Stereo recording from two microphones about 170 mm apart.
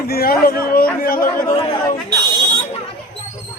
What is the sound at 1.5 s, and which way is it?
Chatter, 25° left (ahead or behind).